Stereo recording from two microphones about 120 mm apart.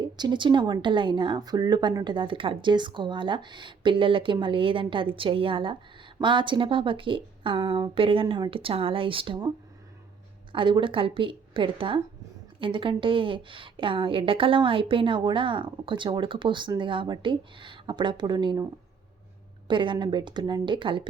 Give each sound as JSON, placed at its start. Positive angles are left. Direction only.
{"t": 0.2, "sound": "a woman's voice", "side_deg": -40}
{"t": 10.5, "sound": "a woman's voice", "side_deg": -45}
{"t": 19.6, "sound": "a woman's voice", "side_deg": -45}